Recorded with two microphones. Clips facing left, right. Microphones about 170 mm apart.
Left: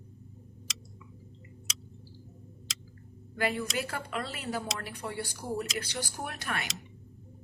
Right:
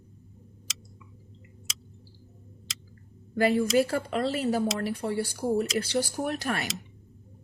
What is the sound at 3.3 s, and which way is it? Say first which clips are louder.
Speech: right 9 dB; 35° right (ahead or behind).